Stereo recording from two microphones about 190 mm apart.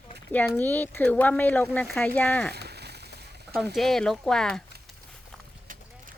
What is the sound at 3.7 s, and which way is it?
Speech, centre (ahead or behind).